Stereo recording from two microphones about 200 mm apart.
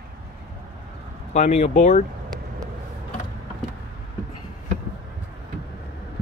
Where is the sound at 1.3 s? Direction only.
35° left (ahead or behind).